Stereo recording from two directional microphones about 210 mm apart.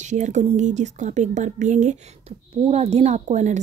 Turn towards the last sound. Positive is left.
turn(degrees=-35)  # may be behind; listen again after turning